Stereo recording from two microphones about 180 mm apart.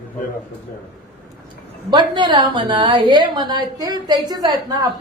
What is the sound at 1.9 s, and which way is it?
A woman's voice, 25° right (ahead or behind).